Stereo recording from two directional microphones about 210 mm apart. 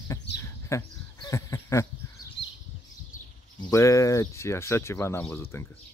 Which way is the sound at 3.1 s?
40° left (ahead or behind).